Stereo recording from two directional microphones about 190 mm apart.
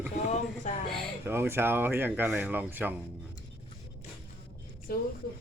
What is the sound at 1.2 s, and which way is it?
Speech, 10° right (ahead or behind).